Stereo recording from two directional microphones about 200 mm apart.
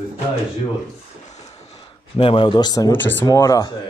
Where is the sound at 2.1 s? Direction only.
25° left (ahead or behind).